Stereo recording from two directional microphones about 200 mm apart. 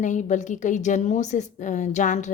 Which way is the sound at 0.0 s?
40° left (ahead or behind).